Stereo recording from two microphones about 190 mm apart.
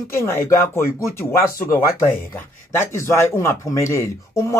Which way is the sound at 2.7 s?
15° left (ahead or behind).